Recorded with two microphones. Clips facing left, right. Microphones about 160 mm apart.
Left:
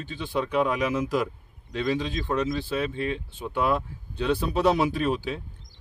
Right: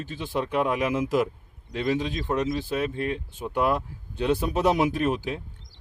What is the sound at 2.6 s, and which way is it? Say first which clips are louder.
Speech: right 1 dB; 15° right (ahead or behind).